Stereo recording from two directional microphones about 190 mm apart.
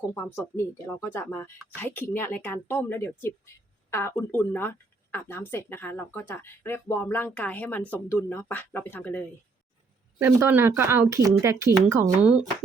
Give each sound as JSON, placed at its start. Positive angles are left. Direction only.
{"t": 0.1, "sound": "speech", "side_deg": 10}
{"t": 10.2, "sound": "speech", "side_deg": -15}